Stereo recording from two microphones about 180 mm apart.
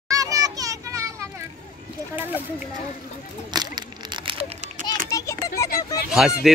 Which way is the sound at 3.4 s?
25° right (ahead or behind).